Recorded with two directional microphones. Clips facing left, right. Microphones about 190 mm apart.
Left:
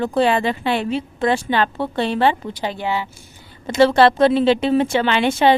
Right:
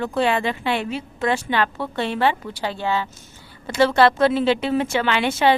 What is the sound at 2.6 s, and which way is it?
Speech, 15° left (ahead or behind).